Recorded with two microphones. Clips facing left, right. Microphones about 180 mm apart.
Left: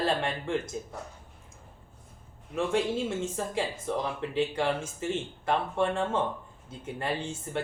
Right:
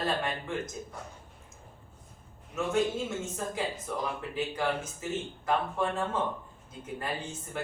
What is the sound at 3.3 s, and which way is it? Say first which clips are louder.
Speech: left 2 dB; 30° left (ahead or behind).